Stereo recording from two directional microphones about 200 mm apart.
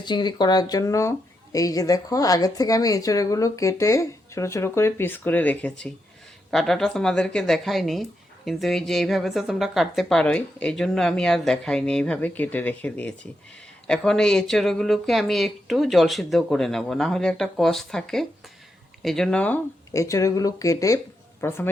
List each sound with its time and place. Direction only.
0.0 s a woman's voice: 20° left (ahead or behind)